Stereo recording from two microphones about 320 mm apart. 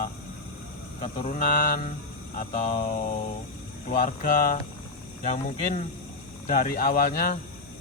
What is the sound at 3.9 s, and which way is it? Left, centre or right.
A man's voice, left.